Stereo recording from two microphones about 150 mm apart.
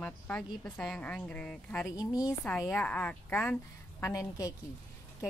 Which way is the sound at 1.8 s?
25° left (ahead or behind).